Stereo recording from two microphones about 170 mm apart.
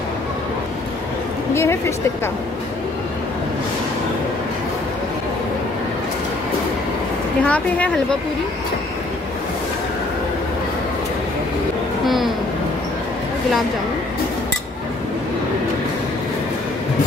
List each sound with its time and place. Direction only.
1.5 s a woman's voice: 15° left (ahead or behind)
7.4 s speech: 10° left (ahead or behind)